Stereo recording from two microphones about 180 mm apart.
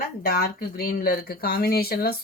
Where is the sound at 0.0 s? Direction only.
60° left (ahead or behind).